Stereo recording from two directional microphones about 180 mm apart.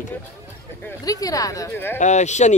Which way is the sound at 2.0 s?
40° left (ahead or behind).